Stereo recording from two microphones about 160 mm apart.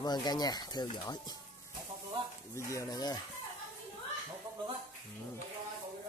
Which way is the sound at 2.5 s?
20° left (ahead or behind).